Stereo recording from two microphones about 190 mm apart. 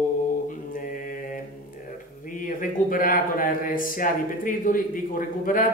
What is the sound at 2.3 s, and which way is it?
Speech, 45° left (ahead or behind).